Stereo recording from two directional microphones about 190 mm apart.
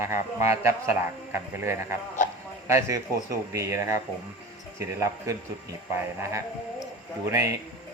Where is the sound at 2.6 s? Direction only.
15° right (ahead or behind).